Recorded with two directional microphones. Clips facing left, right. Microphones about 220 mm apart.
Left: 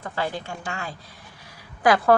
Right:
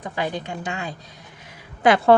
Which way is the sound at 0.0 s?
15° right (ahead or behind).